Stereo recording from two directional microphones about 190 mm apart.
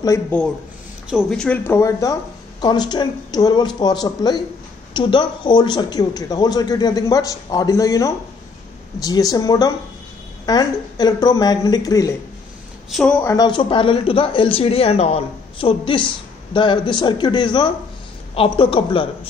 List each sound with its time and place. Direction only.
0.0 s speech: 15° left (ahead or behind)
1.1 s a man's voice: 5° left (ahead or behind); by 12.1 s 20° left (ahead or behind)
12.9 s a man's voice: 5° left (ahead or behind); by 19.0 s 30° left (ahead or behind)